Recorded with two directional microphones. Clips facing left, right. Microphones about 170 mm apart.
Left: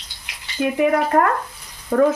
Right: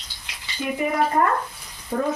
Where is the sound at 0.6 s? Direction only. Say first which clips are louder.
Left 5 dB; 60° left (ahead or behind).